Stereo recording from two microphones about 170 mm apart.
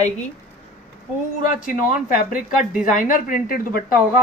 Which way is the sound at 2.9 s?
50° left (ahead or behind).